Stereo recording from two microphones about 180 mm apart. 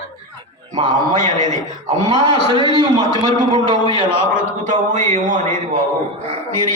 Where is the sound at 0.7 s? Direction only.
25° right (ahead or behind).